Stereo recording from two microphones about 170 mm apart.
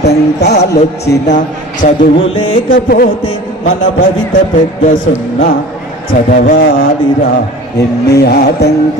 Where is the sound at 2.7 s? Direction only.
60° left (ahead or behind).